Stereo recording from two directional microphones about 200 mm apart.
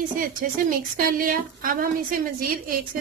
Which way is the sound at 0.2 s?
45° right (ahead or behind).